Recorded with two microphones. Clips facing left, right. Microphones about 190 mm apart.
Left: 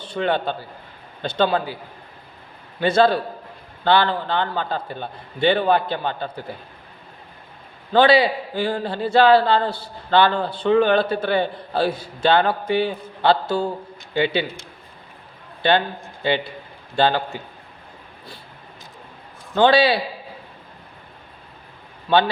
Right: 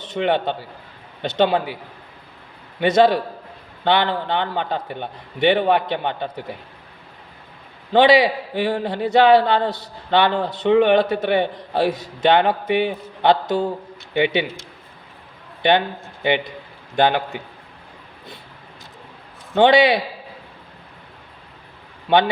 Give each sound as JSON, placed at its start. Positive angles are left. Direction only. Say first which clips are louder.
{"t": 0.0, "sound": "a man's voice", "louder": "right 2 dB", "side_deg": -20}
{"t": 2.8, "sound": "a man's voice", "louder": "right 2 dB", "side_deg": -20}
{"t": 7.9, "sound": "a man's voice", "louder": "right 1 dB", "side_deg": -20}
{"t": 15.6, "sound": "a man's voice", "louder": "right 1 dB", "side_deg": -20}
{"t": 19.5, "sound": "a man's voice", "louder": "right 2 dB", "side_deg": -20}